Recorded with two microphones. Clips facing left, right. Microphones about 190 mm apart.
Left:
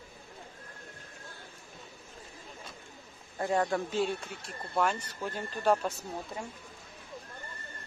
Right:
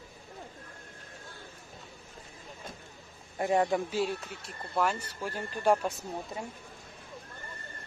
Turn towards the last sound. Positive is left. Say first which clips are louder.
# right 1 dB
turn(degrees=-15)  # may be behind; listen again after turning